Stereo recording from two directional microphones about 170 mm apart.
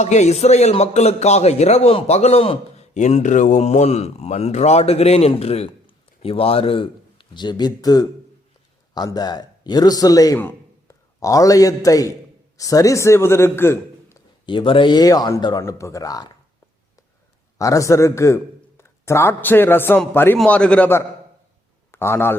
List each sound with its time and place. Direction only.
0.0 s a man's voice: 45° left (ahead or behind); by 14.2 s 15° left (ahead or behind)
14.4 s speech: 30° left (ahead or behind)
17.6 s a man's voice: 20° left (ahead or behind)